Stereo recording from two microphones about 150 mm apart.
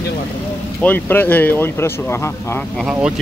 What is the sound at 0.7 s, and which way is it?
Speech, 10° left (ahead or behind).